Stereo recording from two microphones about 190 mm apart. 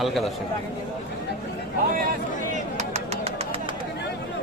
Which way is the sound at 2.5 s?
35° right (ahead or behind).